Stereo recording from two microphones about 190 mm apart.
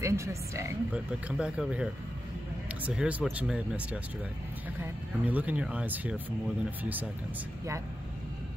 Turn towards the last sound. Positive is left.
turn(degrees=-10)  # may be behind; listen again after turning